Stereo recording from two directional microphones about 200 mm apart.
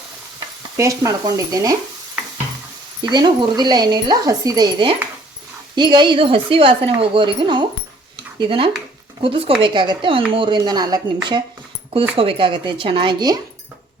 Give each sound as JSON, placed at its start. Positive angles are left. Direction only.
{"t": 0.3, "sound": "stir", "side_deg": -15}
{"t": 3.0, "sound": "a woman's voice", "side_deg": -20}
{"t": 12.1, "sound": "a woman's voice", "side_deg": -25}